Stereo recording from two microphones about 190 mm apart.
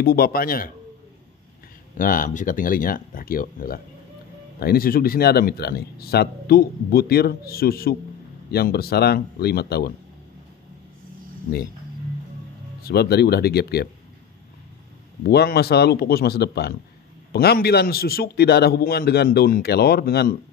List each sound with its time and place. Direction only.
0.0 s speech: 50° left (ahead or behind)
2.0 s a man's voice: 45° left (ahead or behind)
12.8 s a man's voice: 60° left (ahead or behind)
15.2 s a man's voice: 55° left (ahead or behind)